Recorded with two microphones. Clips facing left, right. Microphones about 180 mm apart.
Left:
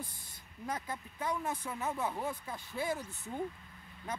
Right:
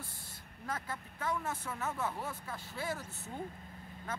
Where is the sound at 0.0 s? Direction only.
15° left (ahead or behind).